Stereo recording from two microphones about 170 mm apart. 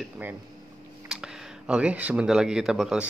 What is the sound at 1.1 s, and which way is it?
Speech, 5° right (ahead or behind).